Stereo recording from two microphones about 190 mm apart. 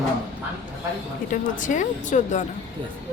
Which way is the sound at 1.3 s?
40° left (ahead or behind).